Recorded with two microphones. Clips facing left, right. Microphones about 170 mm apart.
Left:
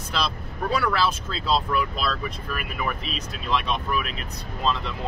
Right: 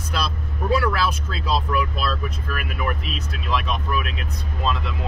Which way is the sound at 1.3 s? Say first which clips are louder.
Even; 5° right (ahead or behind).